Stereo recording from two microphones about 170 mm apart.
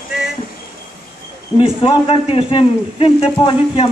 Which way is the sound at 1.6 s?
30° left (ahead or behind).